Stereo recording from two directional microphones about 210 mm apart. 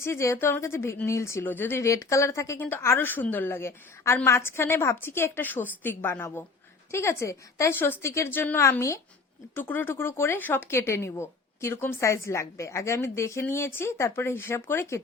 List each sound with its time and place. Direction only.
0.0 s a woman's voice: 15° left (ahead or behind)